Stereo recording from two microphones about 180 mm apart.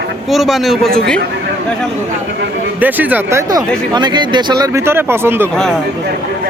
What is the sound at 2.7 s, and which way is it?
Speech, 10° right (ahead or behind).